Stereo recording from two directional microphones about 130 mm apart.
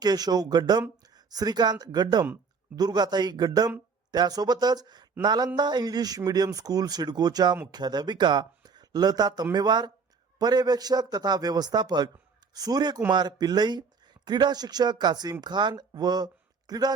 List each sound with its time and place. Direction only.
0.0 s speech: 30° right (ahead or behind)